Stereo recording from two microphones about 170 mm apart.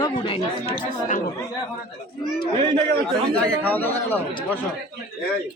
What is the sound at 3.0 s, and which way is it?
Speech, 5° left (ahead or behind).